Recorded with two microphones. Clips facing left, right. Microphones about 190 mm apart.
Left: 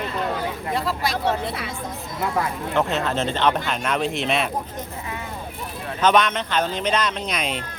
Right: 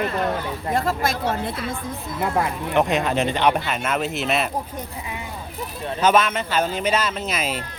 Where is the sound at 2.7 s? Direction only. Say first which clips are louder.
Right 3 dB; 15° right (ahead or behind).